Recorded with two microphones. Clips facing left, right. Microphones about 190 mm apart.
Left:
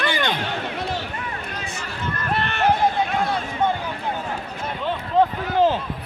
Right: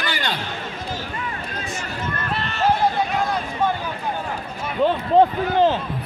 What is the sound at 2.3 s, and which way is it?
Run, 60° left (ahead or behind).